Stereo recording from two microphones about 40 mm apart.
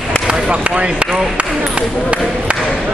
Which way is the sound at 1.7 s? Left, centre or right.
Right.